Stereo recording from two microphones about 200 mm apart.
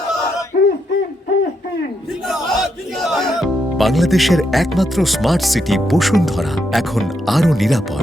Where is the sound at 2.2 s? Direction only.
Centre (ahead or behind).